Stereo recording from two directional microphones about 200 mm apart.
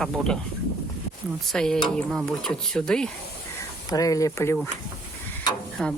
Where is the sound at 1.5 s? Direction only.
Centre (ahead or behind).